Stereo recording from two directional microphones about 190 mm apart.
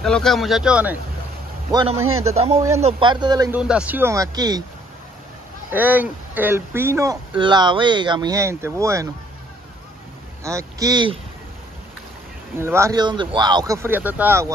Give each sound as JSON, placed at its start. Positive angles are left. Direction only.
{"t": 0.0, "sound": "speech", "side_deg": 0}
{"t": 1.7, "sound": "speech", "side_deg": -20}
{"t": 2.3, "sound": "speech", "side_deg": -35}
{"t": 3.5, "sound": "speech", "side_deg": -5}
{"t": 5.7, "sound": "speech", "side_deg": -10}
{"t": 7.3, "sound": "speech", "side_deg": -25}
{"t": 10.4, "sound": "speech", "side_deg": -15}
{"t": 12.5, "sound": "speech", "side_deg": -15}
{"t": 13.8, "sound": "speech", "side_deg": -10}